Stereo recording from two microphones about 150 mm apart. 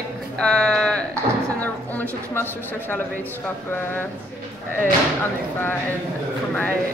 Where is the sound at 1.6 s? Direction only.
10° left (ahead or behind).